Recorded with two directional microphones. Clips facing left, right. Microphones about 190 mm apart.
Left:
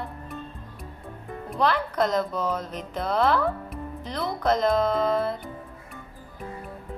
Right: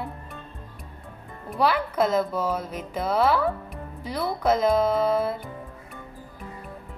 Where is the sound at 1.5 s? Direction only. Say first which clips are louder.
Right 1 dB; 5° right (ahead or behind).